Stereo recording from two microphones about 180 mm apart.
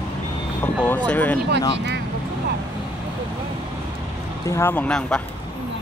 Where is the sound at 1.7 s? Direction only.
70° right (ahead or behind).